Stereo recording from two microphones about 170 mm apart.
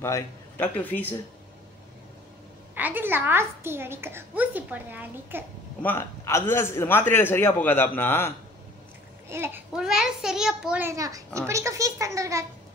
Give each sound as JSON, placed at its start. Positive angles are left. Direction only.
{"t": 0.0, "sound": "a man's voice", "side_deg": 10}
{"t": 2.7, "sound": "a child's voice", "side_deg": -10}
{"t": 5.8, "sound": "a man's voice", "side_deg": 15}
{"t": 9.3, "sound": "a child's voice", "side_deg": -15}